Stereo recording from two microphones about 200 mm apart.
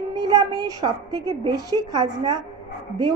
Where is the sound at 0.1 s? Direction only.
20° right (ahead or behind).